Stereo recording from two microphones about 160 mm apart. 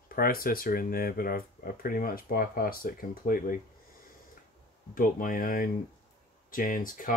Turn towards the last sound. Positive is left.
turn(degrees=60)  # may be behind; listen again after turning